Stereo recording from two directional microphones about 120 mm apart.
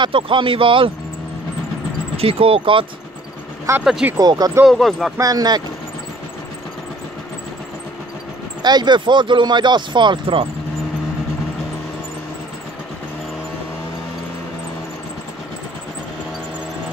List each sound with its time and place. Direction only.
0.0 s speech: 45° right (ahead or behind)
2.1 s speech: 55° right (ahead or behind)
3.8 s speech: 5° right (ahead or behind)
4.2 s speech: 35° right (ahead or behind)
4.6 s speech: centre (ahead or behind)
5.2 s speech: 30° right (ahead or behind)
8.6 s speech: 35° right (ahead or behind)